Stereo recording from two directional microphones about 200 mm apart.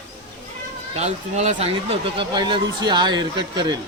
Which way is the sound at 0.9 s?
35° right (ahead or behind).